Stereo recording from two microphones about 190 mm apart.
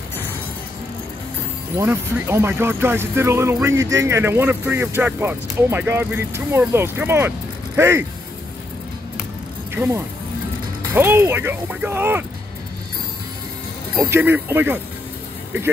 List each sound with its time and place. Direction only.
1.8 s speech: 10° right (ahead or behind)
9.8 s speech: 25° right (ahead or behind)
11.0 s speech: 10° right (ahead or behind)
13.9 s speech: 10° right (ahead or behind)